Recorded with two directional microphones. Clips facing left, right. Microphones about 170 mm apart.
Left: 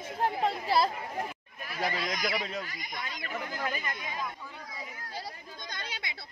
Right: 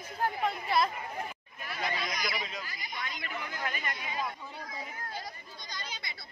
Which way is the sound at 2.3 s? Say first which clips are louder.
Left 5 dB; 60° left (ahead or behind).